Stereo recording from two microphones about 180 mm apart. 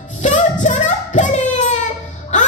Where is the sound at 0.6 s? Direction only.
40° left (ahead or behind).